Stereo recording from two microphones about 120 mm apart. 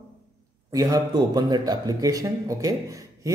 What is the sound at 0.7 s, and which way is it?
Speech, 30° right (ahead or behind).